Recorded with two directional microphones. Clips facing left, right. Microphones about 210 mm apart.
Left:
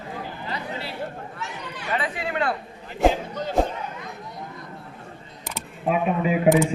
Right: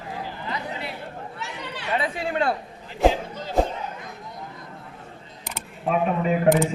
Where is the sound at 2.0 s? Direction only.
25° right (ahead or behind).